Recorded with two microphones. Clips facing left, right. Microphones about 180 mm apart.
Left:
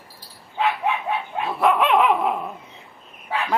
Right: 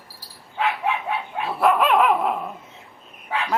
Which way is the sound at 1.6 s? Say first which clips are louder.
Even; 5° right (ahead or behind).